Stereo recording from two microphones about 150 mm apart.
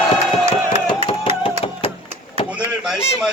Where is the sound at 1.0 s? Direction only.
40° left (ahead or behind).